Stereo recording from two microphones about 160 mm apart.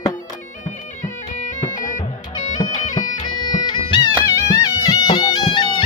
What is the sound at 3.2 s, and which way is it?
Bagpipes, 25° left (ahead or behind).